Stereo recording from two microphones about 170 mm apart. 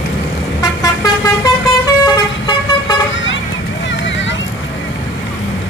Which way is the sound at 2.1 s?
25° left (ahead or behind).